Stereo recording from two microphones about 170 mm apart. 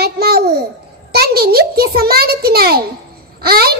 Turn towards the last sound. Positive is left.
turn(degrees=-65)  # may be behind; listen again after turning